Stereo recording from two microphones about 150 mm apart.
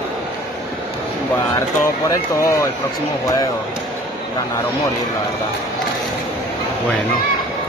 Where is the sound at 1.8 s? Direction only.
20° left (ahead or behind).